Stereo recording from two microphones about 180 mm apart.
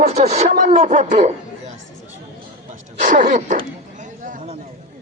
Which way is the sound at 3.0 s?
45° right (ahead or behind).